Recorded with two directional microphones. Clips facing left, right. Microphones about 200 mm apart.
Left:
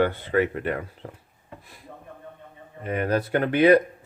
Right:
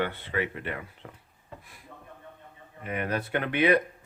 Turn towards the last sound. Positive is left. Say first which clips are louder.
# left 7 dB
turn(degrees=35)  # may be behind; listen again after turning